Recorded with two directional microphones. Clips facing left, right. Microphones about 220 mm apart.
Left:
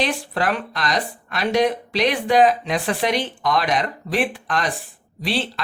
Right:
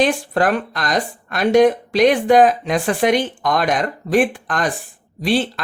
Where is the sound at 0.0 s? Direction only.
50° right (ahead or behind).